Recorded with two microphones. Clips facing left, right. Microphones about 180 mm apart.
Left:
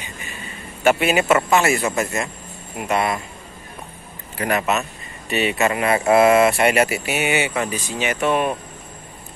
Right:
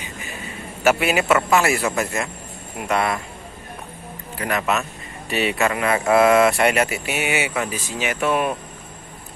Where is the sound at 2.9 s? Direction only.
20° left (ahead or behind).